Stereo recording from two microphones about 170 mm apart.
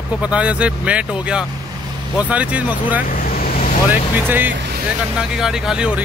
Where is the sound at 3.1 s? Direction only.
55° left (ahead or behind).